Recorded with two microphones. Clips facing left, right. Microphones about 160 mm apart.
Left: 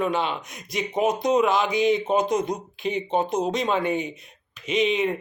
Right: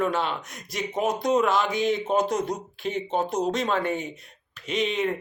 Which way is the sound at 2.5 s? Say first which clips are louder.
Left 2 dB; centre (ahead or behind).